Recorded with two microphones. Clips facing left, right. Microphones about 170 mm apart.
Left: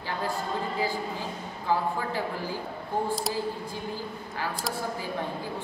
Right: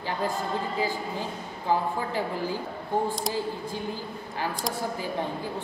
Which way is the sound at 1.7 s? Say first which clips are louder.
Right 1 dB; 15° right (ahead or behind).